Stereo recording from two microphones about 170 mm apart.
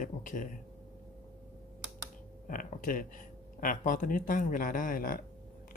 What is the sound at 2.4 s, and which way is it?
Speech, 50° left (ahead or behind).